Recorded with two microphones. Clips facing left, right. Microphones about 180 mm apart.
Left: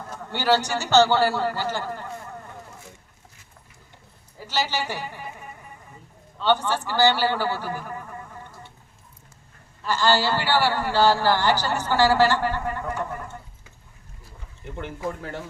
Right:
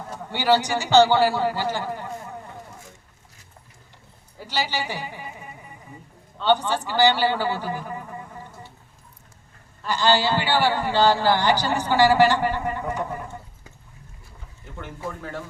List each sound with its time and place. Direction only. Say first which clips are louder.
0.0 s a man's voice: right 1 dB; 15° right (ahead or behind)
4.4 s a man's voice: left 1 dB; 15° right (ahead or behind)
6.4 s a man's voice: right 1 dB; 15° right (ahead or behind)
9.8 s a man's voice: right 1 dB; 15° right (ahead or behind)